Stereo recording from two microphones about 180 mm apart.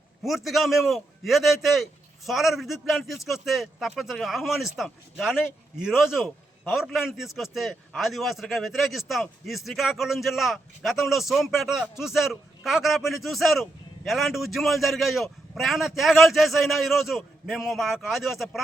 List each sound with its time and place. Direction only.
0.2 s a man's voice: centre (ahead or behind)